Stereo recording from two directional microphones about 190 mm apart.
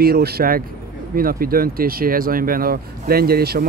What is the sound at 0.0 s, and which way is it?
Speech, 55° right (ahead or behind).